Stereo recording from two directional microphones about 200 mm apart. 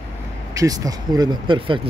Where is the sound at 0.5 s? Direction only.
20° right (ahead or behind).